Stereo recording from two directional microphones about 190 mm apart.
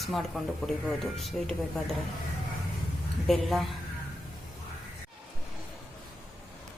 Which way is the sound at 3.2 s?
Centre (ahead or behind).